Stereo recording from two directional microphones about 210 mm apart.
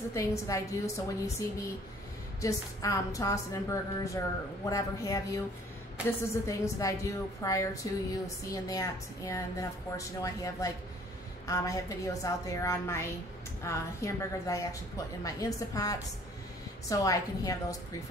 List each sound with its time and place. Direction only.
0.1 s a woman's voice: 15° left (ahead or behind)